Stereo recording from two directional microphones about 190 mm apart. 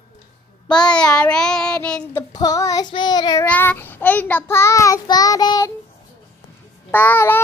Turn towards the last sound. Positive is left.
turn(degrees=10)  # may be behind; listen again after turning